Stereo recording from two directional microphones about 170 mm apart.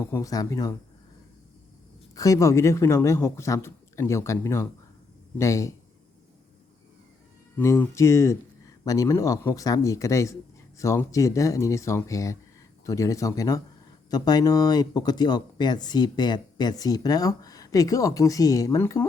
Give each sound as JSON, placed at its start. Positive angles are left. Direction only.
{"t": 0.0, "sound": "speech", "side_deg": 15}
{"t": 2.1, "sound": "speech", "side_deg": 20}
{"t": 7.5, "sound": "speech", "side_deg": 15}